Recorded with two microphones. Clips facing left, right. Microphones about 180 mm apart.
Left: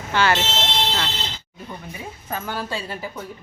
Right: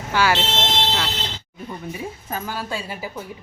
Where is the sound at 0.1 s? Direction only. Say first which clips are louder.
Even; 5° right (ahead or behind).